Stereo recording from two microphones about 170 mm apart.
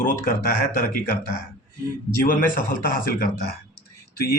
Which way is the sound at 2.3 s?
55° left (ahead or behind).